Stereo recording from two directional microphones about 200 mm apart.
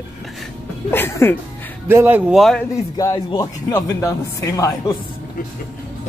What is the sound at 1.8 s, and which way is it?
Speech, 10° right (ahead or behind).